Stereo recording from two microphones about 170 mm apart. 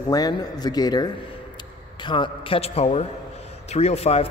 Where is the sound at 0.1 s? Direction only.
20° left (ahead or behind).